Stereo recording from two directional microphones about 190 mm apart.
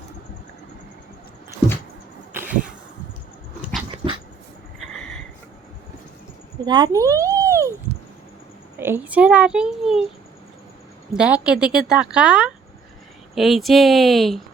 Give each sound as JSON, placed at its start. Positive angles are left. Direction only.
{"t": 2.4, "sound": "insect", "side_deg": -45}
{"t": 3.6, "sound": "dog", "side_deg": 0}
{"t": 4.8, "sound": "a sound", "side_deg": 0}
{"t": 6.7, "sound": "speech", "side_deg": -20}
{"t": 8.8, "sound": "a woman's voice", "side_deg": -10}
{"t": 11.1, "sound": "a woman's voice", "side_deg": -5}